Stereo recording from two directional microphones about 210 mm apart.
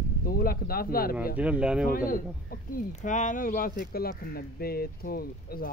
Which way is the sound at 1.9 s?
40° left (ahead or behind).